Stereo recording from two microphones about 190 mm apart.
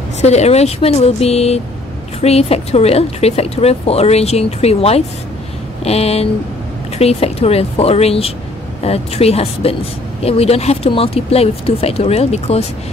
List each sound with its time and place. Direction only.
0.2 s speech: 35° left (ahead or behind)